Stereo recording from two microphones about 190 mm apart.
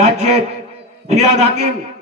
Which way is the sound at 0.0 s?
35° right (ahead or behind).